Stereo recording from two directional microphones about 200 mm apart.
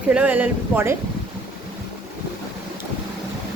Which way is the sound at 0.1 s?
5° right (ahead or behind).